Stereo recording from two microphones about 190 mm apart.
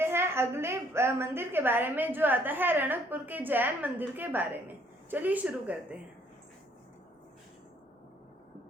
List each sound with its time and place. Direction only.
0.0 s a woman's voice: 15° right (ahead or behind)